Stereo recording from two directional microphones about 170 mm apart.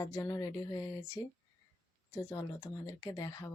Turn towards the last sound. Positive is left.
turn(degrees=20)  # may be behind; listen again after turning